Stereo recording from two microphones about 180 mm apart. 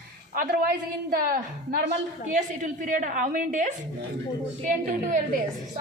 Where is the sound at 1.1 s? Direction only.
50° right (ahead or behind).